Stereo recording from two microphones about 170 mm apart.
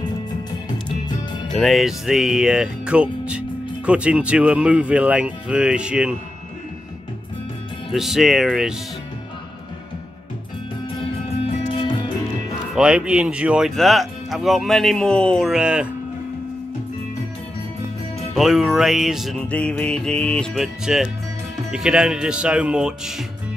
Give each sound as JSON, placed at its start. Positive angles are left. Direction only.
{"t": 1.5, "sound": "speech", "side_deg": 0}
{"t": 7.9, "sound": "speech", "side_deg": 0}
{"t": 11.7, "sound": "music", "side_deg": 30}
{"t": 12.7, "sound": "speech", "side_deg": -5}
{"t": 18.3, "sound": "speech", "side_deg": 0}